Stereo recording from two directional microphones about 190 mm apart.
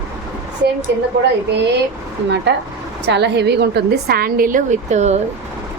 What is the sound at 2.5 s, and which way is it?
A woman's voice, 70° right (ahead or behind).